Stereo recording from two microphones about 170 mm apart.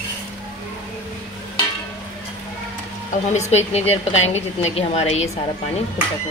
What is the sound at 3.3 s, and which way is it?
A woman's voice, 40° left (ahead or behind).